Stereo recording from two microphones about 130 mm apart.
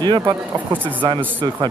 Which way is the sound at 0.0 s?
35° right (ahead or behind).